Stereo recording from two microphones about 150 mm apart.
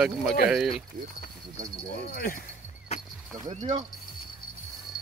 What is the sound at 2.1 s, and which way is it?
Speech, 75° left (ahead or behind).